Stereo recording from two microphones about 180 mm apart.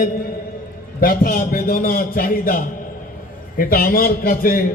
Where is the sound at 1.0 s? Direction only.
55° left (ahead or behind).